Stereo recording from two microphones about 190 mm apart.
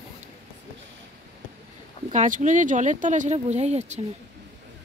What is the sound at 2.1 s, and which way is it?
Speech, 40° right (ahead or behind).